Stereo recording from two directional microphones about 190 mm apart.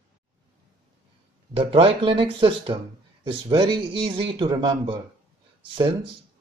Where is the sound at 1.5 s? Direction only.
30° right (ahead or behind).